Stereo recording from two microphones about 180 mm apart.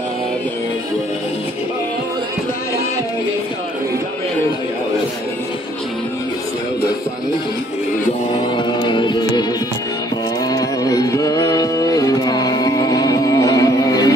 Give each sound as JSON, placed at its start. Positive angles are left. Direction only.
{"t": 8.5, "sound": "music", "side_deg": 25}
{"t": 10.5, "sound": "music", "side_deg": 20}